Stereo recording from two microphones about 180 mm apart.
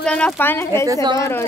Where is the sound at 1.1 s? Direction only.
15° left (ahead or behind).